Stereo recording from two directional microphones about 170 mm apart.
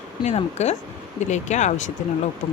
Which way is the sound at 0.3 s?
40° left (ahead or behind).